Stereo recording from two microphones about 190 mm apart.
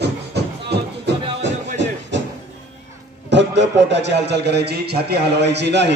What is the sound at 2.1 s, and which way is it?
Music, 70° right (ahead or behind).